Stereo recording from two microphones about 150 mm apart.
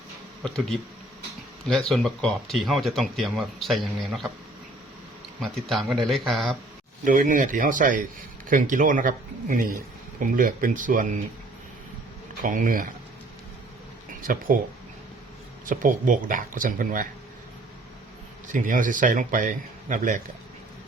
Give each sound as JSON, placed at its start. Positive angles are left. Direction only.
{"t": 1.6, "sound": "speech", "side_deg": 5}
{"t": 5.4, "sound": "speech", "side_deg": 0}
{"t": 7.0, "sound": "a man's voice", "side_deg": -60}
{"t": 12.4, "sound": "a man's voice", "side_deg": -60}
{"t": 14.1, "sound": "speech", "side_deg": -70}
{"t": 15.7, "sound": "a man's voice", "side_deg": -60}
{"t": 18.4, "sound": "a man's voice", "side_deg": -60}